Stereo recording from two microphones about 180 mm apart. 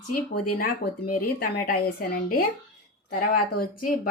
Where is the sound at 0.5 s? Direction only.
55° left (ahead or behind).